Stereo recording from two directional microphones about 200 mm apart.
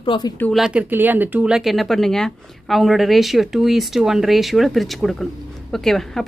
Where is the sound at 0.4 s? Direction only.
Centre (ahead or behind).